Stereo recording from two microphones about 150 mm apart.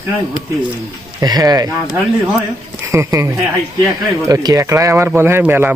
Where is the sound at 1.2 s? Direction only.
25° right (ahead or behind).